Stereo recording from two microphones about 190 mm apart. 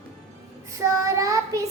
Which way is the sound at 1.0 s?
15° right (ahead or behind).